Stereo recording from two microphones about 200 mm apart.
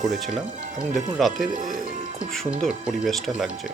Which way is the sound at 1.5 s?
40° right (ahead or behind).